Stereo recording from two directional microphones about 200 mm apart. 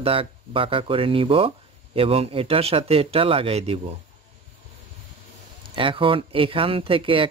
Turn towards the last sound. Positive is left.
turn(degrees=-25)  # may be behind; listen again after turning